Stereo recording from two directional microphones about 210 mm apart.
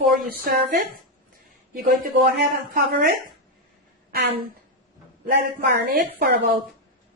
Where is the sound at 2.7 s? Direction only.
45° right (ahead or behind).